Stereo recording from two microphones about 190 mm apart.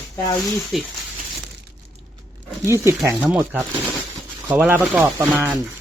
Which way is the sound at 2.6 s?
15° right (ahead or behind).